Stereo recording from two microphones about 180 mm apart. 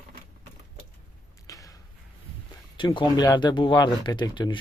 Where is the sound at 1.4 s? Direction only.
20° left (ahead or behind).